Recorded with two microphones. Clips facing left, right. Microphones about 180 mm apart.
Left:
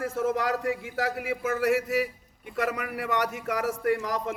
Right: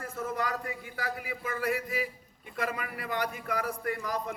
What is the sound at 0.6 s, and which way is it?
A man's voice, 85° left.